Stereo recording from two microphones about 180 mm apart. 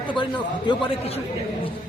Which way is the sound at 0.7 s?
25° left (ahead or behind).